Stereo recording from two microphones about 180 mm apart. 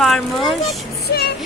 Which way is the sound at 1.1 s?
60° left (ahead or behind).